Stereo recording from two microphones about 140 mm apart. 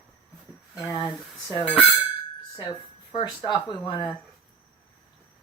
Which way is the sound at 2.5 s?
25° left (ahead or behind).